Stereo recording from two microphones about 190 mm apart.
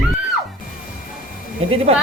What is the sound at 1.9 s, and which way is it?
Speech, 35° right (ahead or behind).